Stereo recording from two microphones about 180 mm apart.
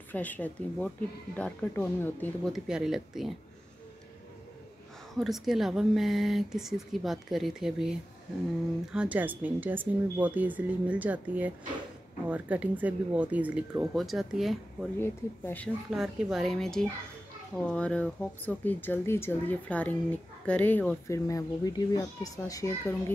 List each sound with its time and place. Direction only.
0.1 s speech: 10° left (ahead or behind)
2.5 s speech: centre (ahead or behind)
5.1 s speech: centre (ahead or behind)
8.9 s speech: 5° right (ahead or behind)
15.0 s speech: 10° left (ahead or behind)
15.9 s a child's voice: centre (ahead or behind); by 23.1 s 15° left (ahead or behind)